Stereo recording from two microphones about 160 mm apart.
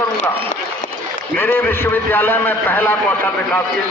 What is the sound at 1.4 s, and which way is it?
A man's voice, 15° left (ahead or behind).